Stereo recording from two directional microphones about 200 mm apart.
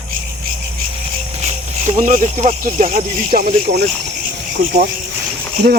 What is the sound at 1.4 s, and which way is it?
Speech, 35° right (ahead or behind).